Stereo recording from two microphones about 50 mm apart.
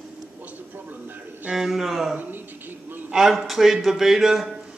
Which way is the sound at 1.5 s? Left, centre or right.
Centre.